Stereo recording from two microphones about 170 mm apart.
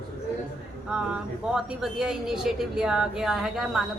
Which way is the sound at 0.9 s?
5° right (ahead or behind).